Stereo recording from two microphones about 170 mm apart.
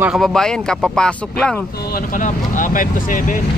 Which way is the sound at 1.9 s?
55° left (ahead or behind).